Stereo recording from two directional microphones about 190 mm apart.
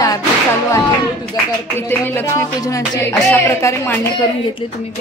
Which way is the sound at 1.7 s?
10° left (ahead or behind).